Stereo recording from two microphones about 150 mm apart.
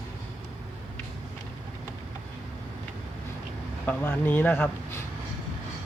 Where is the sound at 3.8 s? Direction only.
15° left (ahead or behind).